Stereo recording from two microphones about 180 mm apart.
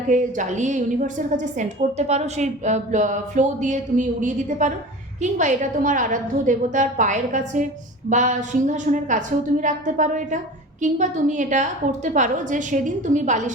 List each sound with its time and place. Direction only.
0.1 s a woman's voice: 45° right (ahead or behind)